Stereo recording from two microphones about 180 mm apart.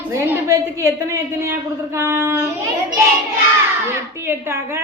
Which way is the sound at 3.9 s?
15° right (ahead or behind).